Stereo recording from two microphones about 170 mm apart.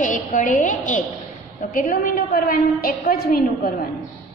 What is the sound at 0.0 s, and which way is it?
A woman's voice, 45° left (ahead or behind).